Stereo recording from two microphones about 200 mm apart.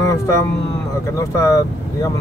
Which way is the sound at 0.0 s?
15° left (ahead or behind).